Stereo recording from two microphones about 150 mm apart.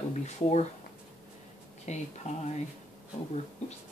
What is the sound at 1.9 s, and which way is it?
Speech, 50° left (ahead or behind).